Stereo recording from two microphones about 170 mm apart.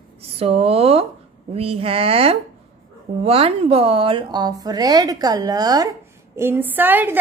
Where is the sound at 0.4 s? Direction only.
35° right (ahead or behind).